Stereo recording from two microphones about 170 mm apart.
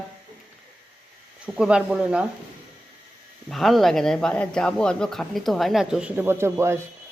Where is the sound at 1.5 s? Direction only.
5° right (ahead or behind).